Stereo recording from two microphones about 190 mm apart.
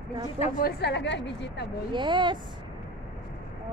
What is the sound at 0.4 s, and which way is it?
A woman's voice, 50° left (ahead or behind).